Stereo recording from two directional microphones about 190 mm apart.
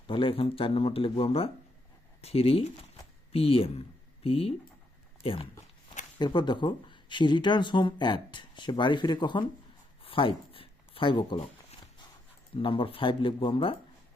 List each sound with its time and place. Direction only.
0.1 s speech: 25° left (ahead or behind)
10.0 s a sound: 30° left (ahead or behind)
12.5 s speech: 30° left (ahead or behind)